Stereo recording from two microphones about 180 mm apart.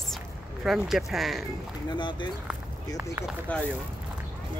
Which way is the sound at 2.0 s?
25° left (ahead or behind).